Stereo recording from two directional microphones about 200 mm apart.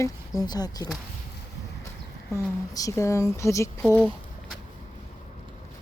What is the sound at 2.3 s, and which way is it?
Speech, 15° left (ahead or behind).